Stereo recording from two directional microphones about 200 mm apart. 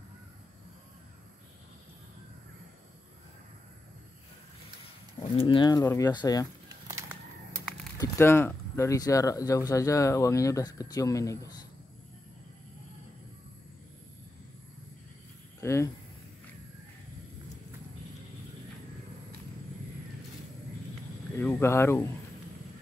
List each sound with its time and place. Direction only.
5.3 s speech: 25° left (ahead or behind)
6.9 s a sound: 15° right (ahead or behind)
8.0 s speech: 10° left (ahead or behind)
15.6 s speech: 15° left (ahead or behind)
21.4 s speech: 10° left (ahead or behind)